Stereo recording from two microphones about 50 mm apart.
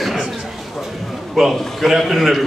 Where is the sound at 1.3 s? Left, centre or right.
Centre.